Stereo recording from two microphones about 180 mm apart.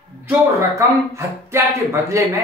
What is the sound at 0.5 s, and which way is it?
Speech, 15° right (ahead or behind).